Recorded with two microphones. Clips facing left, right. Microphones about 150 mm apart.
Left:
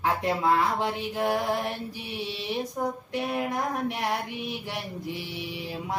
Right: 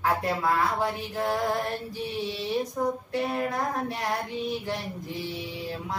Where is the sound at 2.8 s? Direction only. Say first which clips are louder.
Right 2 dB; 20° left (ahead or behind).